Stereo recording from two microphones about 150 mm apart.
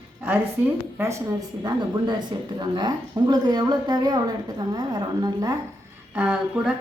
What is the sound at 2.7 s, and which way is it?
A woman's voice, 30° right (ahead or behind).